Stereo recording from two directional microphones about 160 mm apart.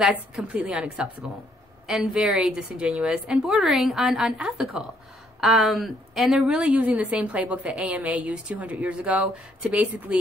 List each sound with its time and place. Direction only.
0.0 s a woman's voice: 5° right (ahead or behind)